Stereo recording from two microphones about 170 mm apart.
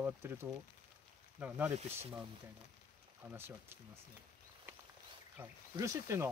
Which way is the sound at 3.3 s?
15° right (ahead or behind).